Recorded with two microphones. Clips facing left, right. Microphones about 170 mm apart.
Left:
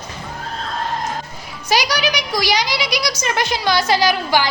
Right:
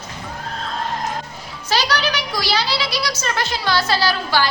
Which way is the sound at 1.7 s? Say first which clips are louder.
Left 2 dB; 15° left (ahead or behind).